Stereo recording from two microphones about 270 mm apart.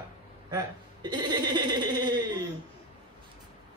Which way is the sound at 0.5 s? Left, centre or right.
Centre.